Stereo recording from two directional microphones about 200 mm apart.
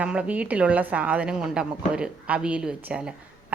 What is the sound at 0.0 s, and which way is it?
A woman's voice, 5° right (ahead or behind).